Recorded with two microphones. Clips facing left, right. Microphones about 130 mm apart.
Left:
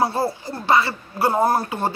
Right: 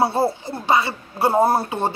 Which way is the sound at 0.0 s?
25° right (ahead or behind).